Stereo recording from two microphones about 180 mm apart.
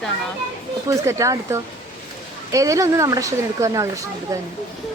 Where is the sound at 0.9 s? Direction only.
20° right (ahead or behind).